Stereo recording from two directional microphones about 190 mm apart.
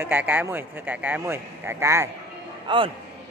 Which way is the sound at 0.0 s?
10° right (ahead or behind).